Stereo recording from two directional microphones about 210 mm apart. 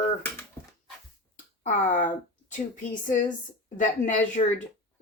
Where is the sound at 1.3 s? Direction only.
40° left (ahead or behind).